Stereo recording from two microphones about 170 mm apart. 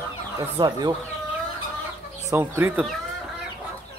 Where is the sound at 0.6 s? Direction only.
30° right (ahead or behind).